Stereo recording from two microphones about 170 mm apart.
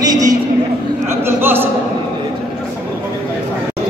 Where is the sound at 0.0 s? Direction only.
20° right (ahead or behind).